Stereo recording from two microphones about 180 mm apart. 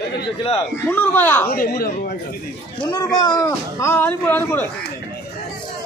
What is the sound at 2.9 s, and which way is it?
A man's voice, 20° left (ahead or behind).